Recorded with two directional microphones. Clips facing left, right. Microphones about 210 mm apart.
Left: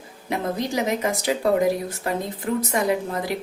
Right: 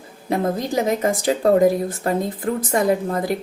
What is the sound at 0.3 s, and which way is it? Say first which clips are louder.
A woman's voice: right 4 dB; 50° right (ahead or behind).